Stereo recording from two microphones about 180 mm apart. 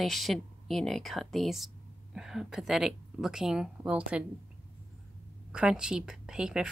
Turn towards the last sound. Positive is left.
turn(degrees=-5)  # may be behind; listen again after turning